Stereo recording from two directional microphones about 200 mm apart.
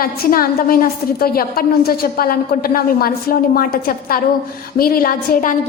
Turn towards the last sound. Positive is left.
turn(degrees=45)  # may be behind; listen again after turning